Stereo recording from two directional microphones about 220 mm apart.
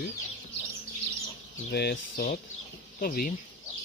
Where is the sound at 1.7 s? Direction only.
45° left (ahead or behind).